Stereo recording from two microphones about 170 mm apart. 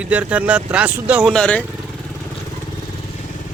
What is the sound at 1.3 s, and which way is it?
Speech, 5° left (ahead or behind).